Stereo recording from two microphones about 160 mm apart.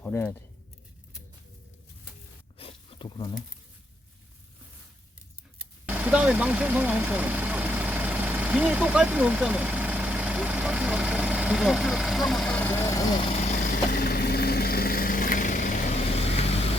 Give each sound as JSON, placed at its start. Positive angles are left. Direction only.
{"t": 0.0, "sound": "speech", "side_deg": 15}
{"t": 2.6, "sound": "a sound", "side_deg": 35}
{"t": 5.8, "sound": "speech", "side_deg": -10}
{"t": 13.2, "sound": "vehicle", "side_deg": 40}
{"t": 13.9, "sound": "vehicle", "side_deg": 70}
{"t": 16.1, "sound": "vehicle", "side_deg": 40}